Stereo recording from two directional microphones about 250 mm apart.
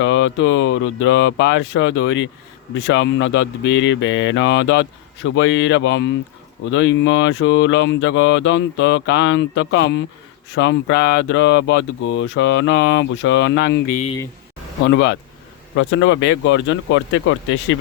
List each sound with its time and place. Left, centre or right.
0.0 s mantra: left
14.8 s mantra: left